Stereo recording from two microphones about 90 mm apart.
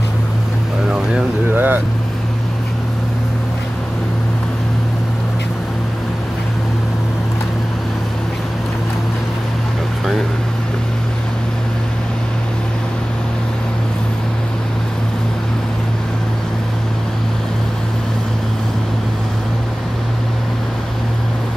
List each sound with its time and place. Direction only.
1.5 s vehicle: 20° right (ahead or behind)